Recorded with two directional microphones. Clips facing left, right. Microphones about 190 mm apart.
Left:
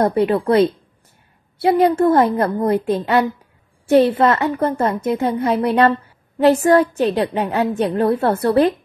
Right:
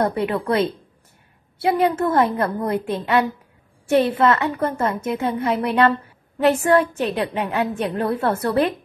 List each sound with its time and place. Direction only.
0.0 s a woman's voice: 35° left (ahead or behind)
3.9 s a woman's voice: 35° left (ahead or behind)